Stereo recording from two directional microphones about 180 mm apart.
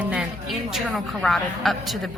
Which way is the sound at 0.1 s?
Centre (ahead or behind).